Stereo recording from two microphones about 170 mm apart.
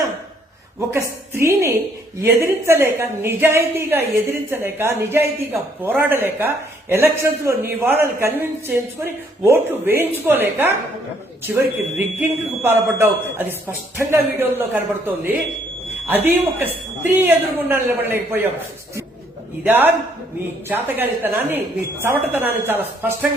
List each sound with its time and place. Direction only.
0.8 s a woman's voice: 15° right (ahead or behind)
19.6 s a woman's voice: 10° right (ahead or behind)